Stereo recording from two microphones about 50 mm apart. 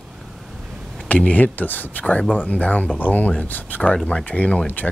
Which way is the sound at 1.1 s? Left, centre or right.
Left.